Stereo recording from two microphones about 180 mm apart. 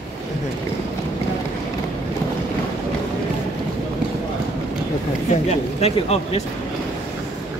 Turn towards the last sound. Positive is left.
turn(degrees=35)  # may be behind; listen again after turning